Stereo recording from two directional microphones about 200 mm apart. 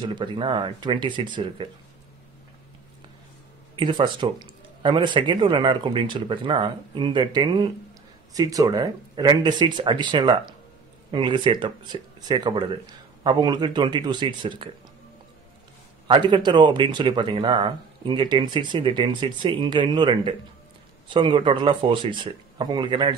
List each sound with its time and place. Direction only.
0.0 s speech: 25° right (ahead or behind)
3.7 s speech: 25° right (ahead or behind)
16.1 s speech: 25° right (ahead or behind)